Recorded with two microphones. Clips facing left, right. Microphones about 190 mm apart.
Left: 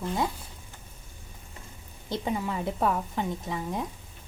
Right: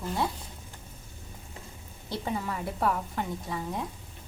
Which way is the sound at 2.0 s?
20° left (ahead or behind).